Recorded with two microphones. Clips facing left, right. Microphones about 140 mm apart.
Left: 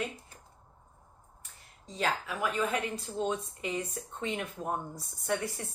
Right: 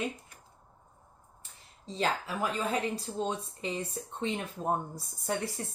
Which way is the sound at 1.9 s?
30° right (ahead or behind).